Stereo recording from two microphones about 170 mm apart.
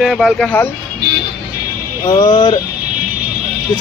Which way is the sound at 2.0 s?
25° left (ahead or behind).